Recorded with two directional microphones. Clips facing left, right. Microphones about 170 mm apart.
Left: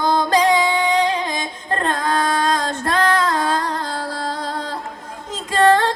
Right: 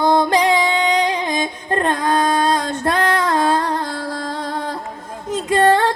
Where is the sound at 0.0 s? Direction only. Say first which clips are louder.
Right 2 dB; 20° right (ahead or behind).